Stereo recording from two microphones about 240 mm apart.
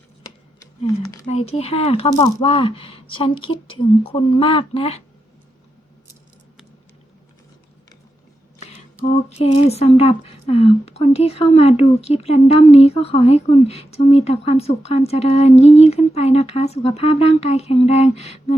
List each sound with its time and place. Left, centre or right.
1.3 s a woman's voice: left
9.3 s a woman's voice: left